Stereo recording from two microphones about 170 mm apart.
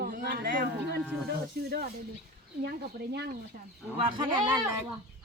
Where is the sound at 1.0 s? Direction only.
5° left (ahead or behind).